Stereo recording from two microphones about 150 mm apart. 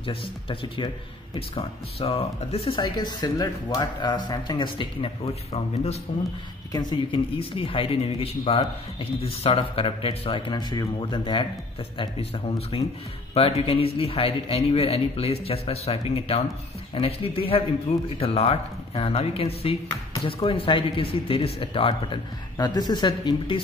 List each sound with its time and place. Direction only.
0.0 s speech: 35° left (ahead or behind)
1.6 s speech: 40° left (ahead or behind)
2.8 s speech: 30° left (ahead or behind)
6.7 s speech: 30° left (ahead or behind)